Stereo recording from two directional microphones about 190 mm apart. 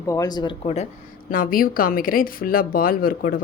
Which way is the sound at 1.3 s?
50° left (ahead or behind).